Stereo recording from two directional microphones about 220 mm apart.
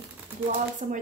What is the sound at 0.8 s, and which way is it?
Speech, 30° right (ahead or behind).